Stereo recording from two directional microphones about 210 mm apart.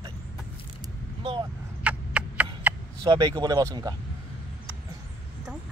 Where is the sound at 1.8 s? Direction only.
5° right (ahead or behind).